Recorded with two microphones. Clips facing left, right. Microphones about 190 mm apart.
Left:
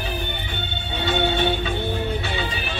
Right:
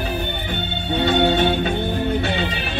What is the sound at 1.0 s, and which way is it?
Music, 55° right (ahead or behind).